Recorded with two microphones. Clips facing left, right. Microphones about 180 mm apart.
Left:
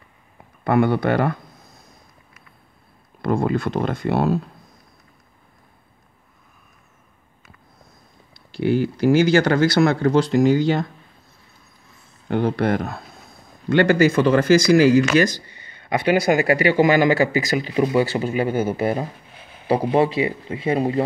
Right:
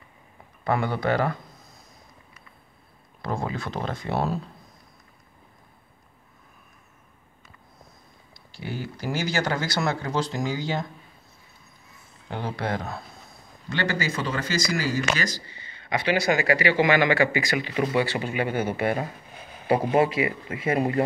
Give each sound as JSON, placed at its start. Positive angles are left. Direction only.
{"t": 0.7, "sound": "speech", "side_deg": 60}
{"t": 3.2, "sound": "speech", "side_deg": 60}
{"t": 8.5, "sound": "speech", "side_deg": 65}
{"t": 12.3, "sound": "speech", "side_deg": 60}
{"t": 16.0, "sound": "speech", "side_deg": 50}